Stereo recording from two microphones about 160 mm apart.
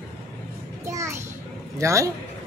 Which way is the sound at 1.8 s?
20° right (ahead or behind).